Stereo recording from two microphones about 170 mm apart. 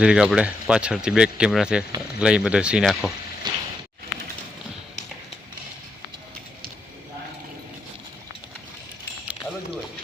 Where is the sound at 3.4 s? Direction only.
25° right (ahead or behind).